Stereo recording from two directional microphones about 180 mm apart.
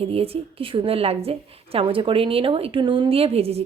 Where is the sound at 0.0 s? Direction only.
35° right (ahead or behind).